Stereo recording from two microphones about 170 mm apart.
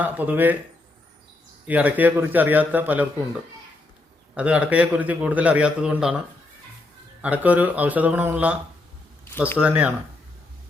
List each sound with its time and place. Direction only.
0.0 s a man's voice: 10° right (ahead or behind)
1.6 s a man's voice: 10° right (ahead or behind)
4.4 s a man's voice: 5° right (ahead or behind)
7.2 s a man's voice: 10° right (ahead or behind)
9.6 s a man's voice: 5° right (ahead or behind)